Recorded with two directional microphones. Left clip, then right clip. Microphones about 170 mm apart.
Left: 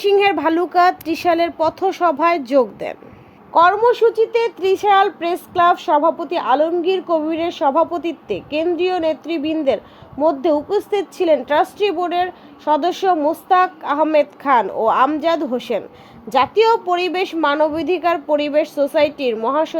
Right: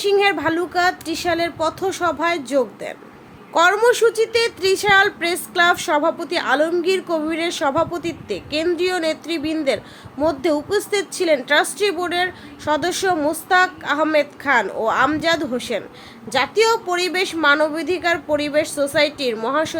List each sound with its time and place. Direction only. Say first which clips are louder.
0.0 s a woman's voice: left 2 dB; 40° left (ahead or behind)
3.5 s a woman's voice: left 2 dB; 15° left (ahead or behind)